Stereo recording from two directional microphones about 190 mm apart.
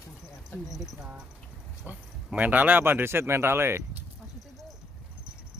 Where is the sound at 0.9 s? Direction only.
5° right (ahead or behind).